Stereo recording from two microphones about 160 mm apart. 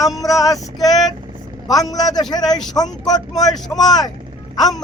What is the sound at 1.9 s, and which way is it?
Speech, 25° left (ahead or behind).